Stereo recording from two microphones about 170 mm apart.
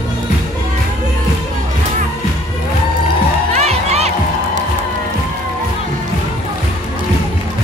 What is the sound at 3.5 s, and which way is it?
Music, 40° right (ahead or behind).